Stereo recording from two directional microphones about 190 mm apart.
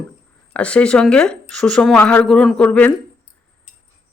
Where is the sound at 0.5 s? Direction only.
5° left (ahead or behind).